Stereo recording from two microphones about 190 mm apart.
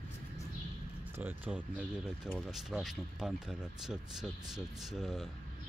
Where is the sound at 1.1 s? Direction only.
10° right (ahead or behind).